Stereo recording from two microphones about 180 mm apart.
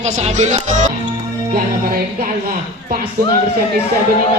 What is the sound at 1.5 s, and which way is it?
Speech, 55° right (ahead or behind).